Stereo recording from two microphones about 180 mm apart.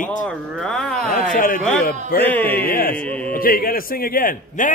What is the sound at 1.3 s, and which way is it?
Speech, 50° left (ahead or behind).